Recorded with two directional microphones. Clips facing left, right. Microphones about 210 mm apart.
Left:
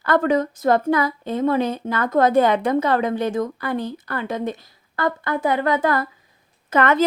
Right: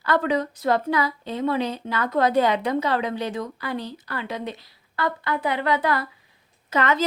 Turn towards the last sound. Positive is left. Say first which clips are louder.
# left 4 dB
turn(degrees=55)  # may be behind; listen again after turning